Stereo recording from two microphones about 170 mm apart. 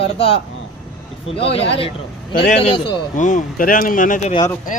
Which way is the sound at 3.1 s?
50° left (ahead or behind).